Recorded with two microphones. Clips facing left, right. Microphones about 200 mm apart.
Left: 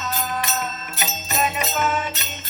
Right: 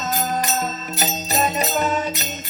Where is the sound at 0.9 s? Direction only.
35° right (ahead or behind).